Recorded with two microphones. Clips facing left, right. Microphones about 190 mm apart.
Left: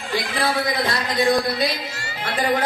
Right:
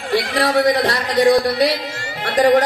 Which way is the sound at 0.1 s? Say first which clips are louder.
Right 6 dB; 70° right (ahead or behind).